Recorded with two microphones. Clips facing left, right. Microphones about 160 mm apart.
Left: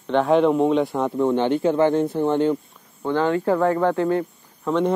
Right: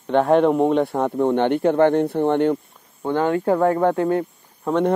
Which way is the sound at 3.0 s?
15° right (ahead or behind).